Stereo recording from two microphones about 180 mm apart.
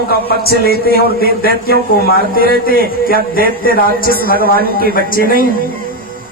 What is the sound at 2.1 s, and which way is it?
A man's voice, 55° left (ahead or behind).